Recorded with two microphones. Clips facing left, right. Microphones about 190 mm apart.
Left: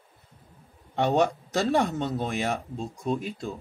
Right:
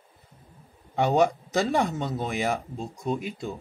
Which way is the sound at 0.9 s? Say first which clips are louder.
Right 1 dB; 5° right (ahead or behind).